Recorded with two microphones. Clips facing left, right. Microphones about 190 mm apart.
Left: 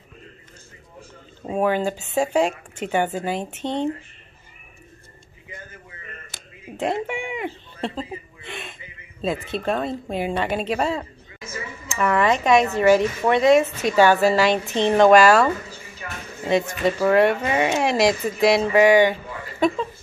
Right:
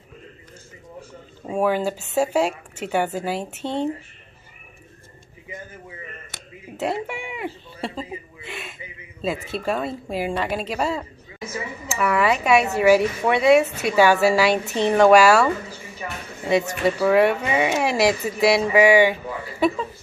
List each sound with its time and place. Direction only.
1.6 s a woman's voice: 5° right (ahead or behind)
6.8 s a woman's voice: 5° right (ahead or behind)
16.8 s a woman's voice: 10° right (ahead or behind)